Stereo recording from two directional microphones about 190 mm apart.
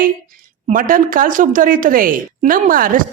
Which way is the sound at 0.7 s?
45° right (ahead or behind).